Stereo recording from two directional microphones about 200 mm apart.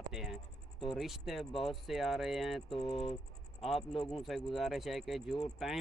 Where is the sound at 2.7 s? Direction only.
25° left (ahead or behind).